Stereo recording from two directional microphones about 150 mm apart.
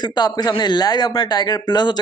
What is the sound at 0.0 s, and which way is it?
Speech, 25° left (ahead or behind).